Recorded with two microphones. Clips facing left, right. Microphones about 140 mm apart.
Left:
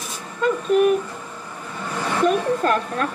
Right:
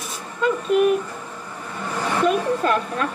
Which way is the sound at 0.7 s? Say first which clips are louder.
Left 1 dB; 45° left (ahead or behind).